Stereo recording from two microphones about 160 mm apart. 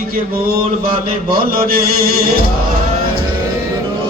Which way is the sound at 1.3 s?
65° right (ahead or behind).